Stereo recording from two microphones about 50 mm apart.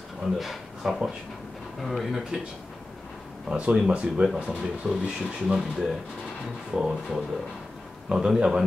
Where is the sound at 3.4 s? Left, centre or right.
Right.